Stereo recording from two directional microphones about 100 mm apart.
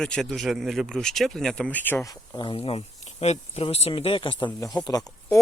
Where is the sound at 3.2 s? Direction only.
85° left; by 4.5 s 60° left (ahead or behind).